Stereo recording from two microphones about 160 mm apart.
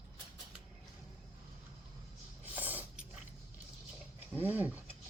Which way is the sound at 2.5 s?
10° right (ahead or behind).